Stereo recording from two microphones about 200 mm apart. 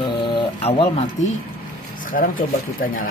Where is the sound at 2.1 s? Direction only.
45° left (ahead or behind).